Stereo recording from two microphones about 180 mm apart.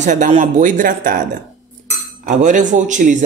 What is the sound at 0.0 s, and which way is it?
Speech, 40° right (ahead or behind).